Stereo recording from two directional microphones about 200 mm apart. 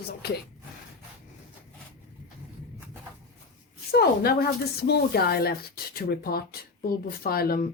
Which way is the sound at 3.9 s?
50° left (ahead or behind).